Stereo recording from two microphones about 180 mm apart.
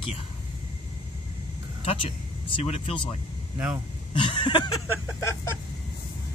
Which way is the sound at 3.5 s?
10° right (ahead or behind).